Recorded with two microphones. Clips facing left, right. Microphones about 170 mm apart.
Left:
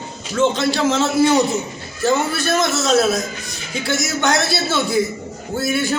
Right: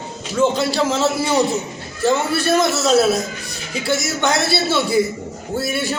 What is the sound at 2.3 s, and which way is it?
Speech, 30° right (ahead or behind).